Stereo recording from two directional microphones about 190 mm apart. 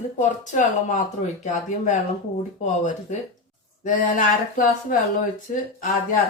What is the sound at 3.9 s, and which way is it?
Speech, 45° left (ahead or behind).